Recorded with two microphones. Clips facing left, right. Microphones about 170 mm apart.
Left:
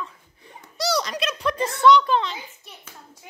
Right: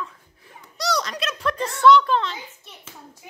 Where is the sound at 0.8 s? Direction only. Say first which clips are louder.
Left 1 dB; 5° left (ahead or behind).